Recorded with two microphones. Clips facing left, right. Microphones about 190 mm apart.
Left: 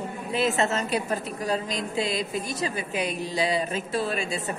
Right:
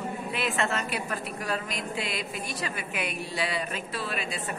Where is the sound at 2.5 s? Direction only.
40° left (ahead or behind).